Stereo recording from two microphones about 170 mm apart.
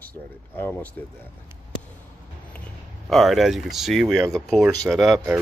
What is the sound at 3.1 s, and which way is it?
Speech, centre (ahead or behind).